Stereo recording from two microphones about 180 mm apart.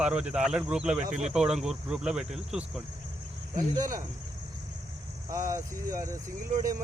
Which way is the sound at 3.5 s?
20° right (ahead or behind).